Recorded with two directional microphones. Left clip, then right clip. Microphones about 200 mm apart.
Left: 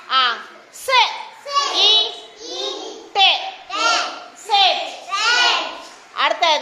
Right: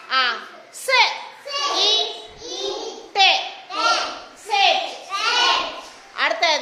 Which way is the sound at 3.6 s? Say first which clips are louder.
Left 3 dB; 35° left (ahead or behind).